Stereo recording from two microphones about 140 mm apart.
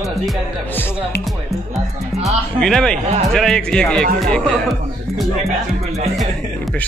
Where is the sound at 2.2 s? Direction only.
Centre (ahead or behind).